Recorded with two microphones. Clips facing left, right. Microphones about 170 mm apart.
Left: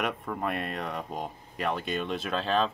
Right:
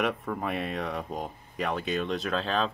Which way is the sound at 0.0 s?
Centre (ahead or behind).